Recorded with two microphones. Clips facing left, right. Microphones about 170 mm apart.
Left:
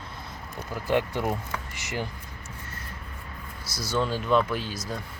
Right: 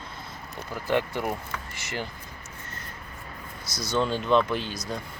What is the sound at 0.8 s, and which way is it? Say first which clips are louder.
Speech: left 1 dB; 15° left (ahead or behind).